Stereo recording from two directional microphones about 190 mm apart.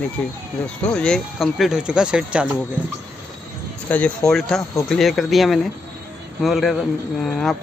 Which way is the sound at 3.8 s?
5° left (ahead or behind).